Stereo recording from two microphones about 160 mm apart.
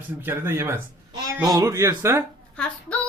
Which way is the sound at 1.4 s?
20° right (ahead or behind).